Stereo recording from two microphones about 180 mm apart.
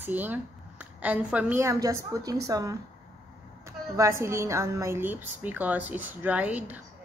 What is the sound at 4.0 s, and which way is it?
Speech, 15° right (ahead or behind).